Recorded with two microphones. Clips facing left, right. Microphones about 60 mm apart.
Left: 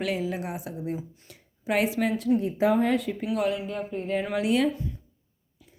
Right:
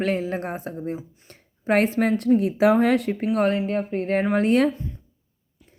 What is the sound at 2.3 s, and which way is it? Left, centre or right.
Speech, right.